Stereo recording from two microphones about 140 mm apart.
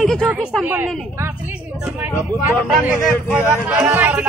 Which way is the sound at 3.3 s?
15° right (ahead or behind).